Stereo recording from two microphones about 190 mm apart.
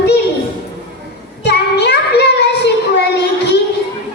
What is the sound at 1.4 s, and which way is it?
Child singing, 60° left (ahead or behind).